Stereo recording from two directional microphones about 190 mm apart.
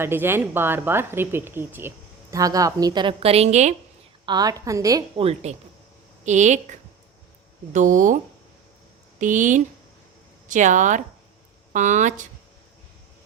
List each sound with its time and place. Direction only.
0.0 s a woman's voice: 10° right (ahead or behind); by 3.8 s 35° right (ahead or behind)
4.3 s a woman's voice: 20° right (ahead or behind)
5.2 s a woman's voice: 35° right (ahead or behind)
9.2 s a woman's voice: 40° right (ahead or behind)